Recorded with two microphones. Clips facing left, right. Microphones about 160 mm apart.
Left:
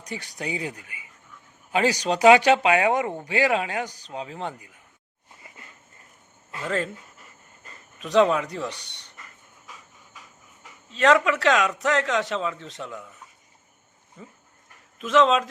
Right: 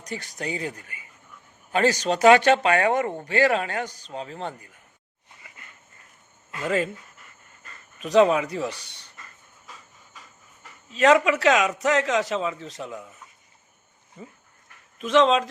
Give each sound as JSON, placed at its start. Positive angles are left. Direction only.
{"t": 0.1, "sound": "speech", "side_deg": 15}
{"t": 6.7, "sound": "speech", "side_deg": -10}
{"t": 7.9, "sound": "a man's voice", "side_deg": 0}
{"t": 9.1, "sound": "a sound", "side_deg": 20}
{"t": 10.8, "sound": "a man's voice", "side_deg": -5}
{"t": 14.9, "sound": "a man's voice", "side_deg": 0}